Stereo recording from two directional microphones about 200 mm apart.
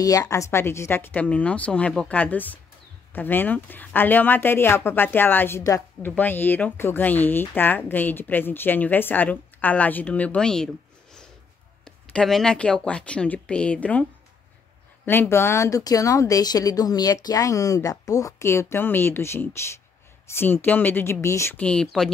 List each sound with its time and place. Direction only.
0.0 s speech: 15° left (ahead or behind)
11.8 s speech: 5° left (ahead or behind)
15.0 s speech: 10° left (ahead or behind)